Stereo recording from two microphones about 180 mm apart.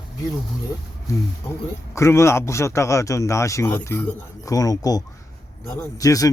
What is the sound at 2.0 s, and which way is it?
Speech, 15° left (ahead or behind).